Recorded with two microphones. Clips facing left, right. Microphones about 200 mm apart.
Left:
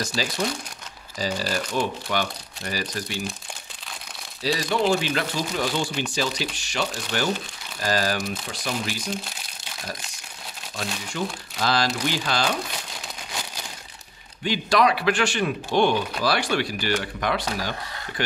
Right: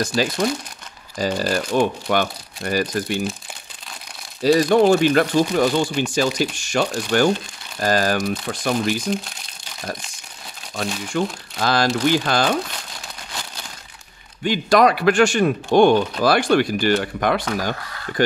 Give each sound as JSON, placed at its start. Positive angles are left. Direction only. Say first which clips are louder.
{"t": 0.0, "sound": "speech", "louder": "right 6 dB", "side_deg": -55}
{"t": 4.4, "sound": "speech", "louder": "right 9 dB", "side_deg": -50}
{"t": 10.8, "sound": "speech", "louder": "right 6 dB", "side_deg": -55}
{"t": 14.4, "sound": "speech", "louder": "right 5 dB", "side_deg": -50}